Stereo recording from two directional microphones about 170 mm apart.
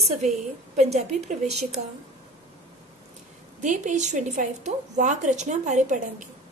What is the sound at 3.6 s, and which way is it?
A woman's voice, 45° right (ahead or behind).